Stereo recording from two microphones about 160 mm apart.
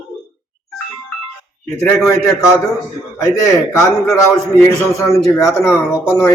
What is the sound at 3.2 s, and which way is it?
Speech, 15° left (ahead or behind).